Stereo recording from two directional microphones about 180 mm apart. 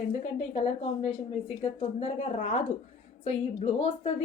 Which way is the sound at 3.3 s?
35° left (ahead or behind).